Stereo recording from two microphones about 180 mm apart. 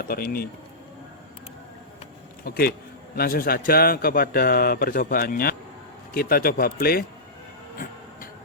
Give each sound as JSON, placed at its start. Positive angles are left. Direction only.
{"t": 0.0, "sound": "a man's voice", "side_deg": 55}
{"t": 2.4, "sound": "a man's voice", "side_deg": 55}